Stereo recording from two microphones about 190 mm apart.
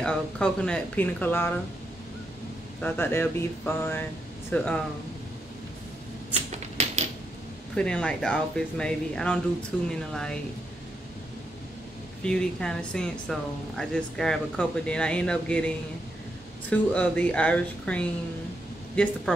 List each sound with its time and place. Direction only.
0.0 s speech: 5° left (ahead or behind)
2.8 s speech: 10° left (ahead or behind)
7.7 s speech: 5° left (ahead or behind)
12.2 s speech: 5° left (ahead or behind)